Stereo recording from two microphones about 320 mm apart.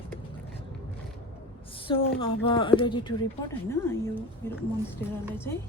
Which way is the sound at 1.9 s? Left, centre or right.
Centre.